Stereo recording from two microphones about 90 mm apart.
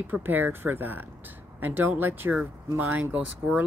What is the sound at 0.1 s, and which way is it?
Speech, 20° right (ahead or behind).